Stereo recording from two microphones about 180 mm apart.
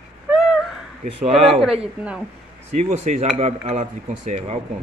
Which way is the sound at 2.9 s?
40° right (ahead or behind).